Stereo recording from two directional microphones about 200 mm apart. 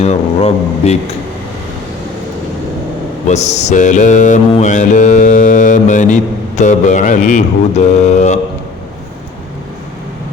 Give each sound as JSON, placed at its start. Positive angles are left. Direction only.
{"t": 0.0, "sound": "mantra", "side_deg": 30}
{"t": 3.2, "sound": "mantra", "side_deg": 35}